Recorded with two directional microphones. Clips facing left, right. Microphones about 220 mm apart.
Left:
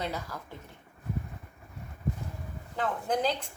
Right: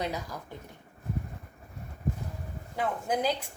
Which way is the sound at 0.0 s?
15° right (ahead or behind).